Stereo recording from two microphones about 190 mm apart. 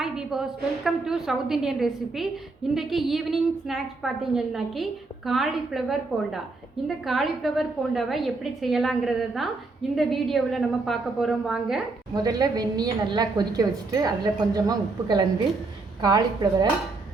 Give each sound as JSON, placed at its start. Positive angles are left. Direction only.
{"t": 0.0, "sound": "a woman's voice", "side_deg": -5}
{"t": 12.1, "sound": "a woman's voice", "side_deg": -20}